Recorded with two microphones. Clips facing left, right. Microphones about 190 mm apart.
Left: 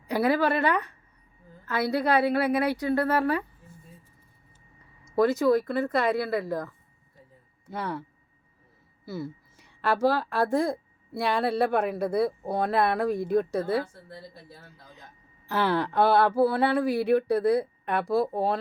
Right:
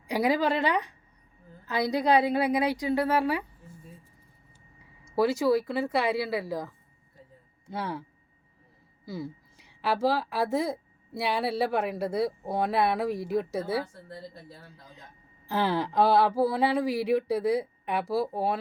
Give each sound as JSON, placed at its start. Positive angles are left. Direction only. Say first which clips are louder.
{"t": 0.1, "sound": "a woman's voice", "louder": "left 1 dB", "side_deg": -15}
{"t": 5.0, "sound": "a woman's voice", "louder": "left 2 dB", "side_deg": -10}
{"t": 7.8, "sound": "a woman's voice", "louder": "left 1 dB", "side_deg": -10}
{"t": 9.0, "sound": "a woman's voice", "louder": "left 2 dB", "side_deg": -15}
{"t": 15.4, "sound": "a woman's voice", "louder": "left 1 dB", "side_deg": -15}